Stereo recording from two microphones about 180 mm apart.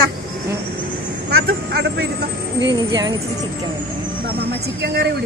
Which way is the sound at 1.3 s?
65° right (ahead or behind).